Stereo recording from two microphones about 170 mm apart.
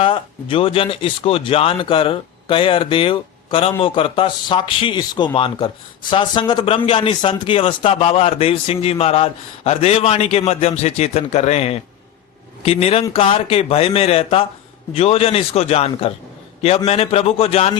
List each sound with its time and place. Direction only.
0.0 s speech: 30° left (ahead or behind)